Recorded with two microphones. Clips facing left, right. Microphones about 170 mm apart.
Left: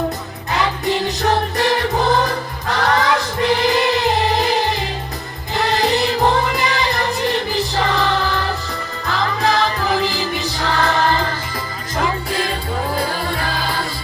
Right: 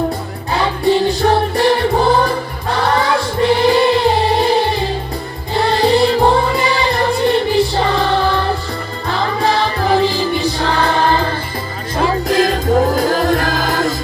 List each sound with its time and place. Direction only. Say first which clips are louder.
0.5 s music: right 5 dB; 30° right (ahead or behind)